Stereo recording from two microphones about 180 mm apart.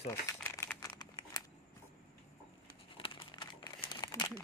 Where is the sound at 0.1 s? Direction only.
15° left (ahead or behind).